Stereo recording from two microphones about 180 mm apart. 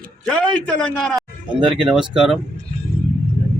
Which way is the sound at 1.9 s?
5° right (ahead or behind).